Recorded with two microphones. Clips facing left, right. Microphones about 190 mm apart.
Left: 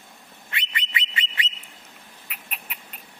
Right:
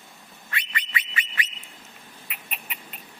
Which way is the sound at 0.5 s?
25° left (ahead or behind).